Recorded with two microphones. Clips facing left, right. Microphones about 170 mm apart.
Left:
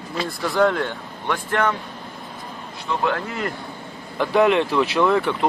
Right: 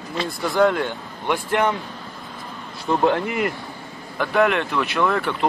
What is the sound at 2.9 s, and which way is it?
Speech, 40° right (ahead or behind).